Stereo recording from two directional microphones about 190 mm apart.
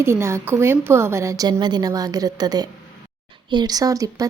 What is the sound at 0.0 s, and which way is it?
A woman's voice, 15° right (ahead or behind).